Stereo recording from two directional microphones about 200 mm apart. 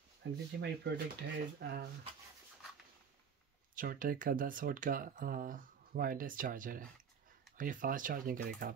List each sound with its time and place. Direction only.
0.2 s speech: 60° right (ahead or behind)
3.7 s speech: 45° right (ahead or behind)